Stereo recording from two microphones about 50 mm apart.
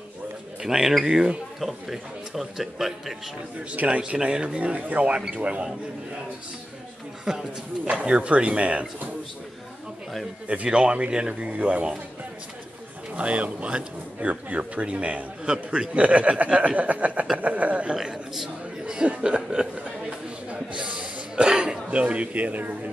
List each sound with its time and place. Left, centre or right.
0.6 s a man's voice: centre
3.7 s a man's voice: right
7.3 s a man's voice: centre
10.5 s a man's voice: right
13.1 s a man's voice: right
18.0 s a man's voice: centre
19.0 s chuckle: centre
21.0 s a sound: centre